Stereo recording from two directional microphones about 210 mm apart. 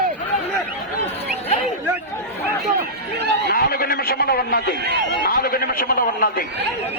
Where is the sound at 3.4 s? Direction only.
45° left (ahead or behind).